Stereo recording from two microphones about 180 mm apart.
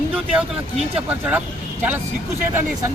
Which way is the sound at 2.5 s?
15° right (ahead or behind).